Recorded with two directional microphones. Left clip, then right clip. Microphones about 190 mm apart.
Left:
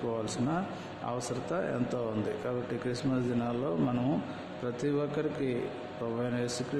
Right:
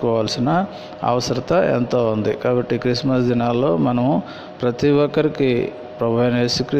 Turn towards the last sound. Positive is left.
turn(degrees=-35)  # may be behind; listen again after turning